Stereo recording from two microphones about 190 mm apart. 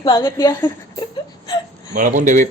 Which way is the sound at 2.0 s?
45° right (ahead or behind).